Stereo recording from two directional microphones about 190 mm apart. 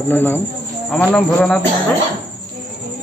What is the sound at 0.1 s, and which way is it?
A man's voice, 10° left (ahead or behind).